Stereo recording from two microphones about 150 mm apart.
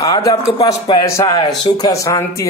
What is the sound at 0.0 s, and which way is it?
Speech, 20° left (ahead or behind).